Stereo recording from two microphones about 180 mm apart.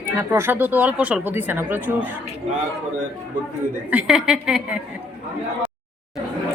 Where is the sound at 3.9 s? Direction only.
5° right (ahead or behind).